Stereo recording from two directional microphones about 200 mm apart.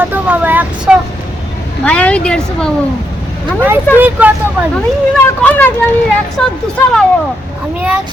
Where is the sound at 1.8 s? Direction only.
5° left (ahead or behind).